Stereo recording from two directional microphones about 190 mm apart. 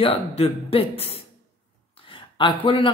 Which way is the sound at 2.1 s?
25° left (ahead or behind).